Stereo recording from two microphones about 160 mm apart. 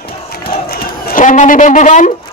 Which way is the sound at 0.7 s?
65° left (ahead or behind).